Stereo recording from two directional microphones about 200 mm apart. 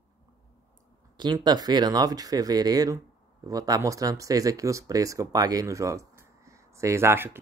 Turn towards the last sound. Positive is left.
turn(degrees=-10)  # may be behind; listen again after turning